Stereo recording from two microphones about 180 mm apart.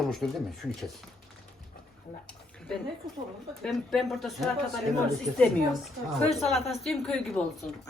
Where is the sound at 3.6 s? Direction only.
Centre (ahead or behind).